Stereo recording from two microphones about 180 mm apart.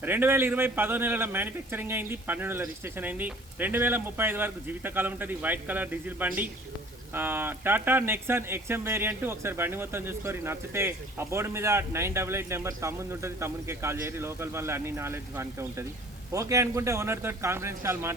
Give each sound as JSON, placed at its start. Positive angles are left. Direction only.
{"t": 0.0, "sound": "speech", "side_deg": -10}